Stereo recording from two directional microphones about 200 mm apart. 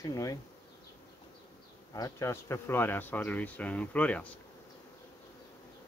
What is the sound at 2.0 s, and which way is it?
Speech, 15° left (ahead or behind).